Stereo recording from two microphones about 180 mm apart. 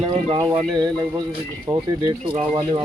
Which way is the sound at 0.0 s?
30° right (ahead or behind).